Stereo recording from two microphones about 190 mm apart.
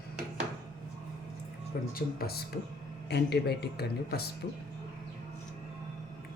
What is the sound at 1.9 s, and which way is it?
Speech, 50° left (ahead or behind).